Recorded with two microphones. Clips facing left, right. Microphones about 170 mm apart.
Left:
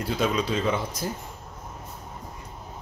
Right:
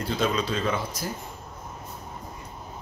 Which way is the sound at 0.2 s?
10° left (ahead or behind).